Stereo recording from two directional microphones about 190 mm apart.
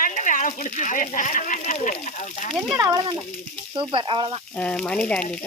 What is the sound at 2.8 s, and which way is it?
Speech, 25° right (ahead or behind).